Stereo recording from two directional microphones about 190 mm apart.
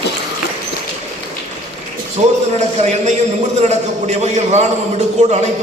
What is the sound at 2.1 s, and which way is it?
A man's voice, 35° right (ahead or behind).